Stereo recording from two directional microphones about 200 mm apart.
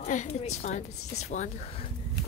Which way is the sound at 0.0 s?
35° left (ahead or behind).